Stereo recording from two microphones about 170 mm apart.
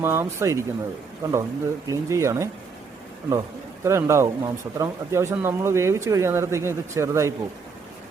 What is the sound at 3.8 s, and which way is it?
A man's voice, 15° right (ahead or behind).